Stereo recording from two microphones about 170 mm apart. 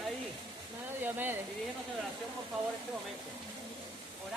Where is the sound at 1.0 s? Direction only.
10° right (ahead or behind).